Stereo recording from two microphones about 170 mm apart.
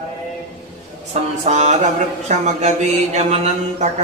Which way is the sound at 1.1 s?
40° right (ahead or behind).